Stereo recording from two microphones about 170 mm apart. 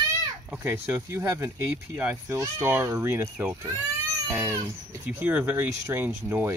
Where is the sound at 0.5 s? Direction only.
15° right (ahead or behind).